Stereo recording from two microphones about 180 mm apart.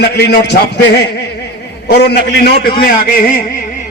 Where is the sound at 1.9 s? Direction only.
70° left (ahead or behind); by 3.2 s 50° left (ahead or behind).